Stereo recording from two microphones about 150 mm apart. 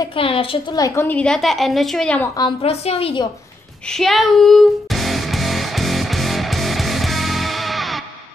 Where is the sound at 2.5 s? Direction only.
45° left (ahead or behind).